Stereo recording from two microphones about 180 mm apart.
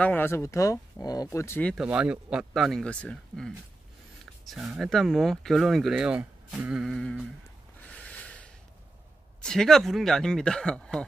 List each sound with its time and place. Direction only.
0.0 s speech: 10° left (ahead or behind)
1.9 s speech: 5° right (ahead or behind)
7.9 s a sound: 5° left (ahead or behind)
9.4 s speech: 5° left (ahead or behind)